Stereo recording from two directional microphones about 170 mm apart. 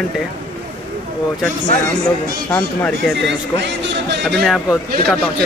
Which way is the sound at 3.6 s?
90° right.